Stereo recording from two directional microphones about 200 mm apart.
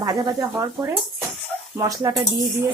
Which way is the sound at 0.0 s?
20° right (ahead or behind).